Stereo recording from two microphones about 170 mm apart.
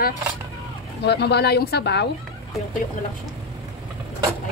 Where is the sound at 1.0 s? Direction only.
80° left.